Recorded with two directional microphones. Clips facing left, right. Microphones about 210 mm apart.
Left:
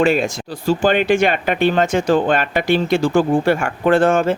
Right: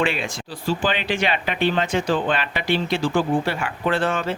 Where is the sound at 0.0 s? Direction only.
45° left (ahead or behind).